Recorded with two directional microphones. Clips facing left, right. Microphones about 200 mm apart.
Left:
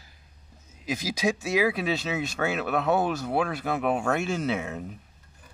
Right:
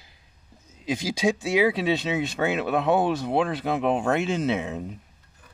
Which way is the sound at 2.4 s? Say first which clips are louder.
Right 2 dB; 20° right (ahead or behind).